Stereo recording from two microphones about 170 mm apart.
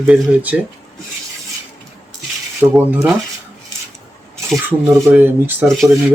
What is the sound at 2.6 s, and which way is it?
Speech, 10° right (ahead or behind).